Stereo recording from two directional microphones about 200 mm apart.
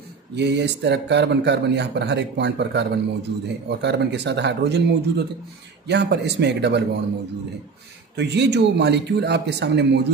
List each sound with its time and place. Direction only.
0.4 s speech: 60° right (ahead or behind)
8.2 s speech: 60° right (ahead or behind)